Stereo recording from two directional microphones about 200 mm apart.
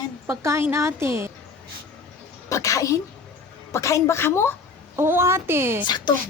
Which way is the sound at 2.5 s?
15° left (ahead or behind).